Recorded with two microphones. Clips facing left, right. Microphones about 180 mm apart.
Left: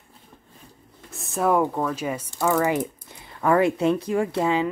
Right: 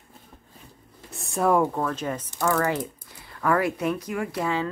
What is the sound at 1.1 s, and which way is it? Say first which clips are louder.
Speech: even; centre (ahead or behind).